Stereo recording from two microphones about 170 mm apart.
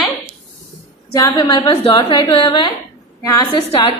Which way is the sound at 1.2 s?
25° left (ahead or behind).